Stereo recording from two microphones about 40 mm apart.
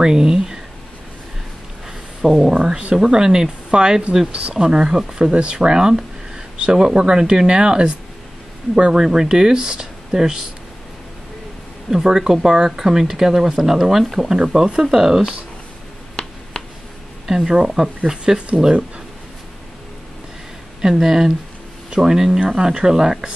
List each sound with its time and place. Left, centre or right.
0.0 s speech: centre
2.5 s speech: right
4.3 s speech: right
4.6 s speech: centre
9.0 s speech: centre
11.9 s speech: centre
14.4 s speech: centre
17.3 s speech: centre
20.8 s speech: centre